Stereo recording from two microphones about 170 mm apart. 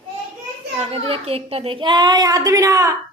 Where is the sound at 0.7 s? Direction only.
35° right (ahead or behind).